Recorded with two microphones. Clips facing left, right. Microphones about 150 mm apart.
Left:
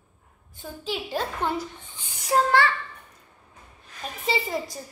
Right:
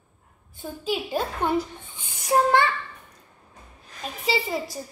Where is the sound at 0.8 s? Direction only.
10° right (ahead or behind).